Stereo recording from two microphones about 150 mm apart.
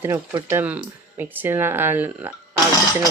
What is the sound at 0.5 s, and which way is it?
Speech, 10° right (ahead or behind).